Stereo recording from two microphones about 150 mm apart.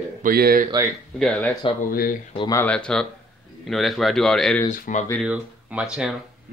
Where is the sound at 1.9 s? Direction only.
70° left (ahead or behind).